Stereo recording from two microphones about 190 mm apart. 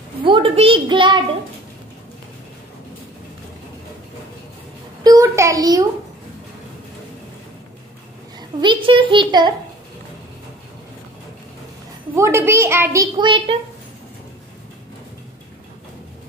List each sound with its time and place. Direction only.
0.2 s a child's voice: 25° right (ahead or behind)
5.0 s a child's voice: 20° right (ahead or behind)
8.4 s a child's voice: 25° right (ahead or behind)
12.2 s a woman's voice: 15° right (ahead or behind)